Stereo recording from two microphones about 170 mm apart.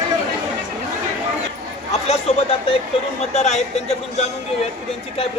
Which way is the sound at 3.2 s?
40° left (ahead or behind).